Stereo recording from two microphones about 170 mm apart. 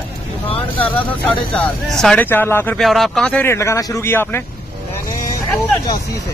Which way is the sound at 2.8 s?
Centre (ahead or behind).